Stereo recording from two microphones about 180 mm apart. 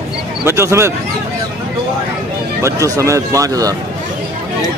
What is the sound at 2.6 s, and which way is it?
Speech, 15° right (ahead or behind).